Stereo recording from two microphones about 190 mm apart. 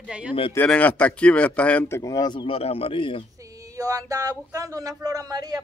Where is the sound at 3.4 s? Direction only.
20° right (ahead or behind).